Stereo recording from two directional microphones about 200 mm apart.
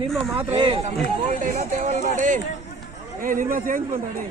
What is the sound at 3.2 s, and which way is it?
Speech, 40° right (ahead or behind).